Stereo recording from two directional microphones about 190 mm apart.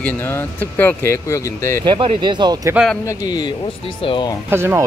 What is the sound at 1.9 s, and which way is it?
Speech, 25° right (ahead or behind).